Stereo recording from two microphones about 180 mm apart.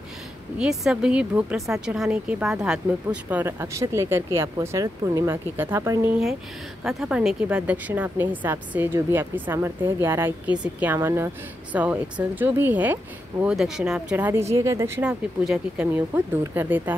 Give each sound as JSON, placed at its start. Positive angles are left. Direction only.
{"t": 0.6, "sound": "speech", "side_deg": -5}
{"t": 6.8, "sound": "speech", "side_deg": 0}
{"t": 15.0, "sound": "speech", "side_deg": -5}